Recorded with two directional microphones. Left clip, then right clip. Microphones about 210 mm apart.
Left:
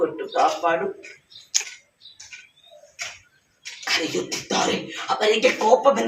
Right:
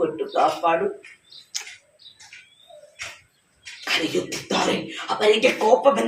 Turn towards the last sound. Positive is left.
turn(degrees=0)  # may be behind; listen again after turning